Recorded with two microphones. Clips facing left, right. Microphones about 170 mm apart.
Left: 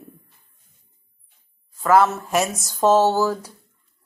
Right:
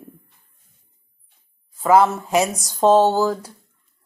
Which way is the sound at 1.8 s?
15° right (ahead or behind).